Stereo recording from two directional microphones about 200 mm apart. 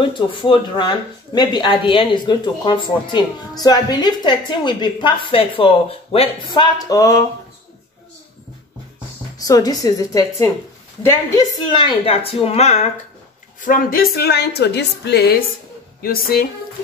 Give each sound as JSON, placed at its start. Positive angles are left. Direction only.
{"t": 0.4, "sound": "speech", "side_deg": 25}
{"t": 9.4, "sound": "a woman's voice", "side_deg": 20}